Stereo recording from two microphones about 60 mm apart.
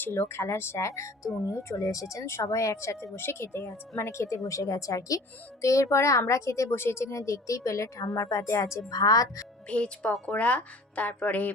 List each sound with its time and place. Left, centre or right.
0.0 s speech: left
5.6 s speech: left
8.9 s speech: left
9.6 s speech: centre